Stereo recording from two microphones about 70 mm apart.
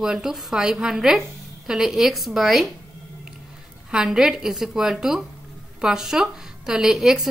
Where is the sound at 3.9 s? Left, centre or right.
Centre.